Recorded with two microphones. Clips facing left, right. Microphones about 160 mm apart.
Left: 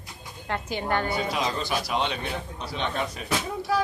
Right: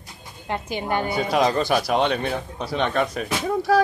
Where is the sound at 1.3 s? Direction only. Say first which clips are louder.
Right 8 dB; 55° right (ahead or behind).